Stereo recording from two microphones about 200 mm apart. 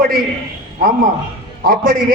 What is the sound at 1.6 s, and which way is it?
Speech, 45° right (ahead or behind).